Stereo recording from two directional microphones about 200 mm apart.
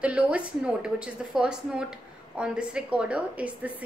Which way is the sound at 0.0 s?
5° right (ahead or behind).